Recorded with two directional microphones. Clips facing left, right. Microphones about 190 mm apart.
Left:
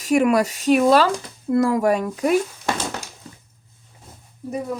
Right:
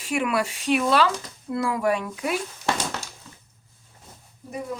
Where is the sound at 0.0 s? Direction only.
40° left (ahead or behind).